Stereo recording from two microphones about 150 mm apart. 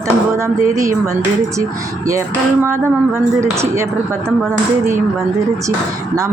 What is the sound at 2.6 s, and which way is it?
A woman's voice, 15° right (ahead or behind).